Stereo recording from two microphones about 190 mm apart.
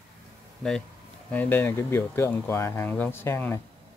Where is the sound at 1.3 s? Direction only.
10° left (ahead or behind).